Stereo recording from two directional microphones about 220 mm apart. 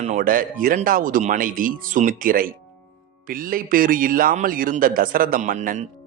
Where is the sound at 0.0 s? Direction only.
35° right (ahead or behind).